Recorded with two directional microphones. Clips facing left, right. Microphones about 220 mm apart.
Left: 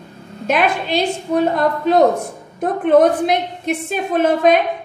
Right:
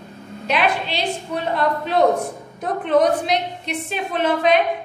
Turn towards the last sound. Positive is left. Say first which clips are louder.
# left 4 dB
turn(degrees=45)  # may be behind; listen again after turning